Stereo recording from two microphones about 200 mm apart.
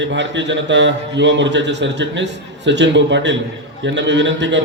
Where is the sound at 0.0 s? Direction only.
65° right (ahead or behind).